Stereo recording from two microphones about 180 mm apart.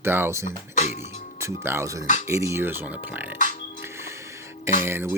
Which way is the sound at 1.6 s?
15° right (ahead or behind).